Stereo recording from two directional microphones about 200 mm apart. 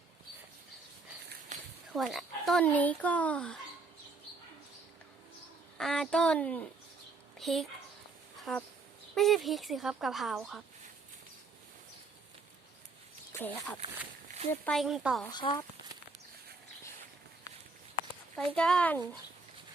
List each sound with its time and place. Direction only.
1.9 s speech: centre (ahead or behind)
5.7 s speech: 5° left (ahead or behind)
13.3 s speech: 10° left (ahead or behind)
15.3 s speech: 20° left (ahead or behind)
18.3 s speech: 5° left (ahead or behind)